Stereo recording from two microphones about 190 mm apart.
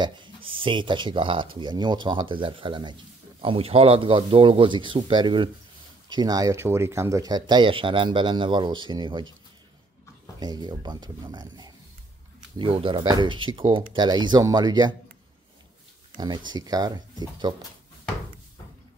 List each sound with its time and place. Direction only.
0.0 s speech: 25° right (ahead or behind)
10.4 s speech: 20° right (ahead or behind)
16.2 s speech: 20° right (ahead or behind)